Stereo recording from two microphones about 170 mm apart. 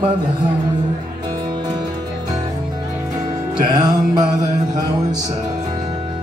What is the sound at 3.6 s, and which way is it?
Music, 25° right (ahead or behind).